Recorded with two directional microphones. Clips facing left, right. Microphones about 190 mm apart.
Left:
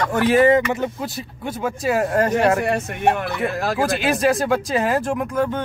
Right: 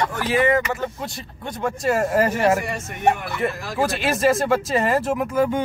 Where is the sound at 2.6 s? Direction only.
60° left (ahead or behind).